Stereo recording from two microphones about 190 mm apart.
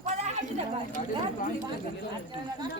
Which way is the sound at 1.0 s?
35° left (ahead or behind).